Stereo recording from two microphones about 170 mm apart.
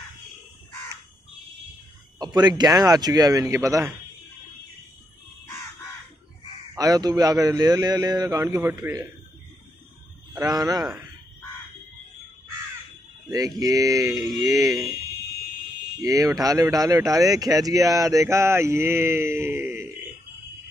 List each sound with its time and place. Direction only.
2.1 s speech: 25° right (ahead or behind)
6.7 s speech: 20° right (ahead or behind)
10.4 s speech: 20° right (ahead or behind)
13.3 s speech: 20° right (ahead or behind)
16.0 s speech: 20° right (ahead or behind)